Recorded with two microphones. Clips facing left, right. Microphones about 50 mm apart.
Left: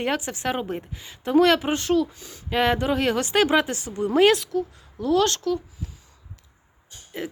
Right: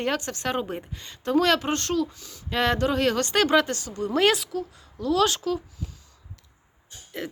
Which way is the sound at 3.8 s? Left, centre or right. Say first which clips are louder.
Left 3 dB; left.